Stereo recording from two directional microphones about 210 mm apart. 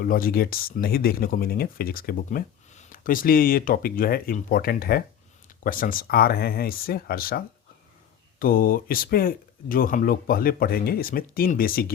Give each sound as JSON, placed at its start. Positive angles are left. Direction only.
{"t": 0.0, "sound": "speech", "side_deg": 45}